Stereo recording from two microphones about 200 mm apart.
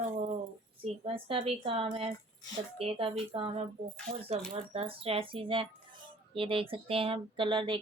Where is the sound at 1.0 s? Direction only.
25° right (ahead or behind).